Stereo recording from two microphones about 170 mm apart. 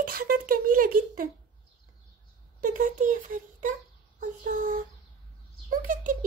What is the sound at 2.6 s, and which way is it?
Speech, 50° right (ahead or behind).